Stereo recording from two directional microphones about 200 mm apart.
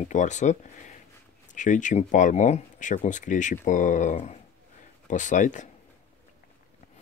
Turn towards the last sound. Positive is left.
turn(degrees=40)  # may be behind; listen again after turning